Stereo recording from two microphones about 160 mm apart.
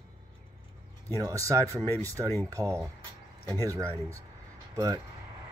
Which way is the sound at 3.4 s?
15° left (ahead or behind).